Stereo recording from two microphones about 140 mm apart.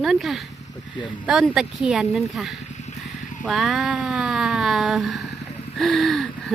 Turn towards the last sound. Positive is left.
turn(degrees=0)  # may be behind; listen again after turning